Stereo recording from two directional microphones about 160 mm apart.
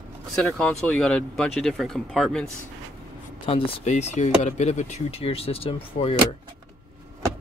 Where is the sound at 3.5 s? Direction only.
45° left (ahead or behind).